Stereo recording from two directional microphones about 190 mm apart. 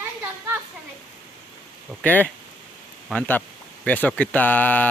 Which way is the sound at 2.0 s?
10° left (ahead or behind).